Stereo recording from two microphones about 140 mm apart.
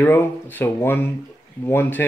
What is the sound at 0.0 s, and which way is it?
Speech, 15° left (ahead or behind).